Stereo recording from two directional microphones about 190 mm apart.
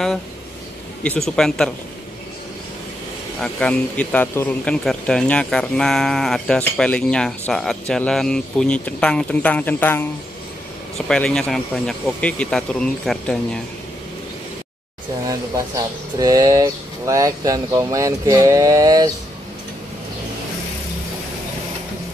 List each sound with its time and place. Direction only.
1.0 s speech: 5° left (ahead or behind)
3.3 s speech: 5° left (ahead or behind)
11.1 s speech: 5° left (ahead or behind)
15.2 s speech: 20° right (ahead or behind)